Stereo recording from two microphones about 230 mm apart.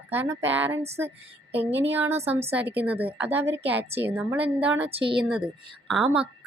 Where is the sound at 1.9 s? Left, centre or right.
Centre.